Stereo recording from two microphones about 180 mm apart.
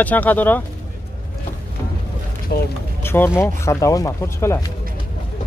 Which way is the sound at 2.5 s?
65° left (ahead or behind).